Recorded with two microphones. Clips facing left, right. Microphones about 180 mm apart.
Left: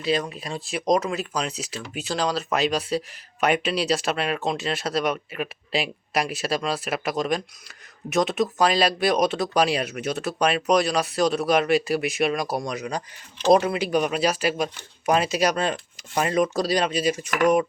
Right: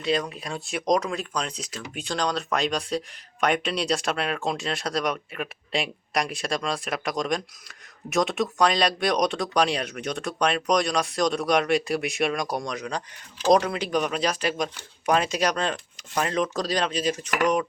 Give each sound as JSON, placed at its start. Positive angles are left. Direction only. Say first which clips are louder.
{"t": 0.0, "sound": "speech", "louder": "left 1 dB", "side_deg": 0}